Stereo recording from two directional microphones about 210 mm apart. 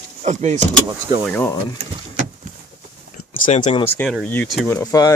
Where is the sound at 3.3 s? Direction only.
40° left (ahead or behind).